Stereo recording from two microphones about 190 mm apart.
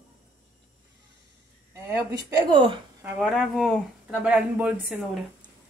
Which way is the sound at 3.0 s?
5° right (ahead or behind).